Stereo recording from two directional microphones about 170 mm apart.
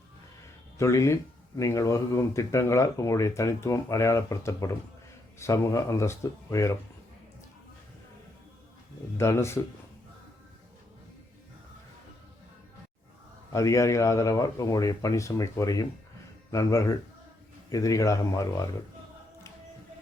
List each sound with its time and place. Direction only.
0.8 s speech: 15° left (ahead or behind)
9.1 s speech: 15° left (ahead or behind)
13.5 s a man's voice: 20° left (ahead or behind)